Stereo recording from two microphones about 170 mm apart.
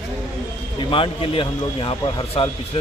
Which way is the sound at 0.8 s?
30° left (ahead or behind).